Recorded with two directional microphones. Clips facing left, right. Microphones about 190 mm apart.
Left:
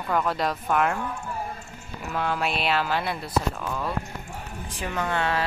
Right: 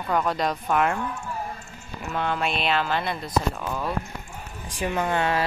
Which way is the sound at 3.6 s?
5° right (ahead or behind).